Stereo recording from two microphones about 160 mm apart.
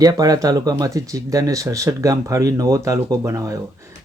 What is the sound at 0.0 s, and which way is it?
Speech, 25° right (ahead or behind).